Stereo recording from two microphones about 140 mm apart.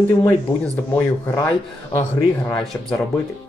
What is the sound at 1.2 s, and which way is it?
Speech, 20° left (ahead or behind).